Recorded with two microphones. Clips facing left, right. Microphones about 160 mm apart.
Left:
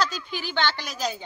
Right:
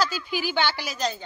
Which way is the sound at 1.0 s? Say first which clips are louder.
Right 1 dB; 10° left (ahead or behind).